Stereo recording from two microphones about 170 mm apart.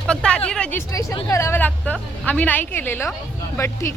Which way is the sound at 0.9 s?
15° left (ahead or behind).